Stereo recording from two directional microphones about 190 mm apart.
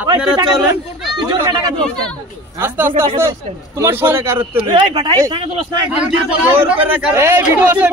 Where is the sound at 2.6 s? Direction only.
10° right (ahead or behind).